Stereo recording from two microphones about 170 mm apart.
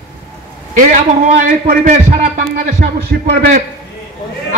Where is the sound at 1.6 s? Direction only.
50° right (ahead or behind).